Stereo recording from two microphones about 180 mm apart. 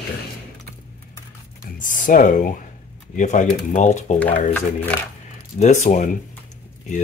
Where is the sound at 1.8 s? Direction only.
45° left (ahead or behind).